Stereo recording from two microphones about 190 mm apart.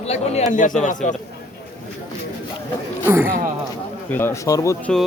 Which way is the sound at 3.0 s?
15° right (ahead or behind).